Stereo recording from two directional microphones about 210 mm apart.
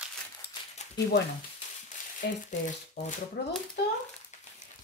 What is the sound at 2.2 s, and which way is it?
Speech, 50° left (ahead or behind).